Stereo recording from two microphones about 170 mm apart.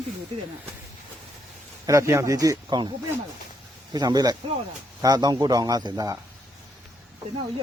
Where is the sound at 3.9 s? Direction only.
20° right (ahead or behind).